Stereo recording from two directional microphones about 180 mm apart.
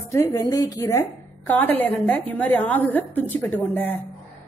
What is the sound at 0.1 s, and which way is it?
A woman's voice, 15° left (ahead or behind).